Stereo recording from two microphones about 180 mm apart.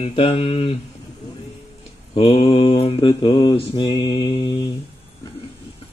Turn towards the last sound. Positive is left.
turn(degrees=25)  # may be behind; listen again after turning